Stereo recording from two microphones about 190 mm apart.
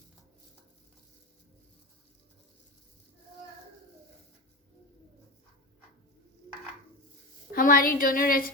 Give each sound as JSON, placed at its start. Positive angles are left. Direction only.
{"t": 7.5, "sound": "a woman's voice", "side_deg": 45}